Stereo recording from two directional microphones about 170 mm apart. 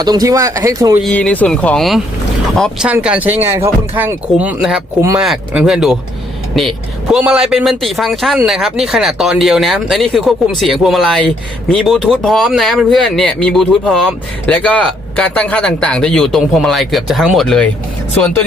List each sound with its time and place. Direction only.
0.0 s speech: 20° right (ahead or behind)
1.0 s speech: 5° left (ahead or behind)
4.9 s speech: 20° right (ahead or behind)
5.2 s speech: centre (ahead or behind)